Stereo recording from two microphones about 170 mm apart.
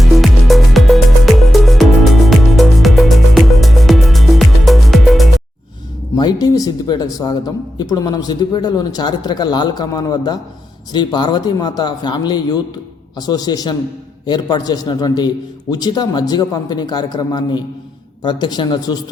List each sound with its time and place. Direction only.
0.0 s music: centre (ahead or behind)
6.1 s speech: 25° left (ahead or behind)